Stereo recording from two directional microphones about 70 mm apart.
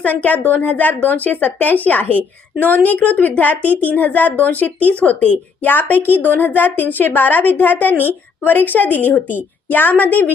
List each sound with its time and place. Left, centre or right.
0.0 s speech: left